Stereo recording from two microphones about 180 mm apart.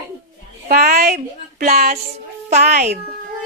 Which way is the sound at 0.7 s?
60° right (ahead or behind).